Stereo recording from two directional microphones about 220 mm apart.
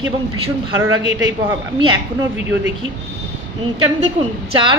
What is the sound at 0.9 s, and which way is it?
Speech, 60° right (ahead or behind).